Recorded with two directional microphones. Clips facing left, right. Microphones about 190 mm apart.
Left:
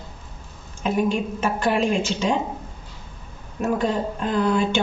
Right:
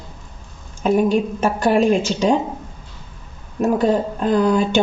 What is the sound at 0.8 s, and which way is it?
Speech, 40° right (ahead or behind).